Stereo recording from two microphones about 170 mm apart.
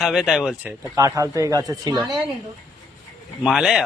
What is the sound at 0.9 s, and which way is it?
Speech, 20° right (ahead or behind).